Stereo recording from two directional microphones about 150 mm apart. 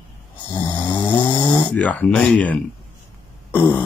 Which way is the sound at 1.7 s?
10° left (ahead or behind).